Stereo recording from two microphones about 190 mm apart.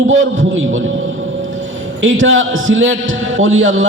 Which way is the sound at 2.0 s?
90° right.